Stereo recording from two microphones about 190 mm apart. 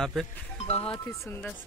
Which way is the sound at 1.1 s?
10° left (ahead or behind).